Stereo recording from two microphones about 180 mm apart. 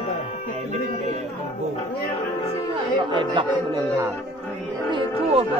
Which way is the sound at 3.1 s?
25° right (ahead or behind).